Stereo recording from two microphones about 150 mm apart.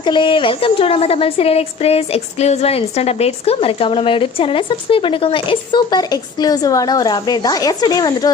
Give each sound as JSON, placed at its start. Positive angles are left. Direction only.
{"t": 0.0, "sound": "a woman's voice", "side_deg": 30}